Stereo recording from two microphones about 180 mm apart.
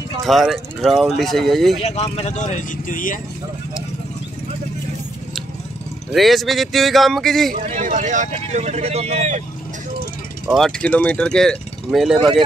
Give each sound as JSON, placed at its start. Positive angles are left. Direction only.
{"t": 0.2, "sound": "speech", "side_deg": 0}
{"t": 1.8, "sound": "speech", "side_deg": 40}
{"t": 6.1, "sound": "speech", "side_deg": 0}
{"t": 7.5, "sound": "speech", "side_deg": -40}
{"t": 10.4, "sound": "speech", "side_deg": 0}